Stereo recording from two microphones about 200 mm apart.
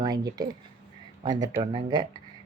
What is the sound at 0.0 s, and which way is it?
Speech, 20° right (ahead or behind).